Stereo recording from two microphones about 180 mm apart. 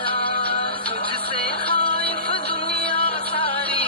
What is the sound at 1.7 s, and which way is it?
Music, 10° left (ahead or behind).